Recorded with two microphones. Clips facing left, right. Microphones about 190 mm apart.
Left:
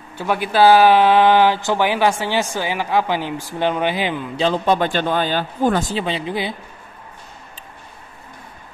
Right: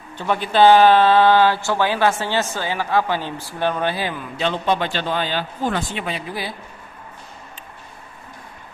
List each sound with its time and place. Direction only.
0.2 s speech: 10° left (ahead or behind)
4.5 s speech: 45° left (ahead or behind)
6.0 s speech: 25° left (ahead or behind)